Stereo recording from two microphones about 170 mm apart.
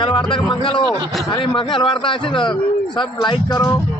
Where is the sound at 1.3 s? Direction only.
30° left (ahead or behind).